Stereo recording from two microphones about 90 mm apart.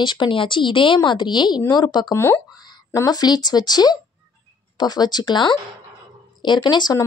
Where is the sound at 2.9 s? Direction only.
45° left (ahead or behind).